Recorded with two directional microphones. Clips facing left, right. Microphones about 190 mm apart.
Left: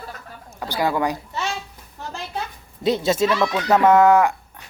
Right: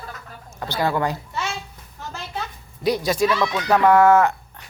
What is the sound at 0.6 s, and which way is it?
Speech, 15° left (ahead or behind).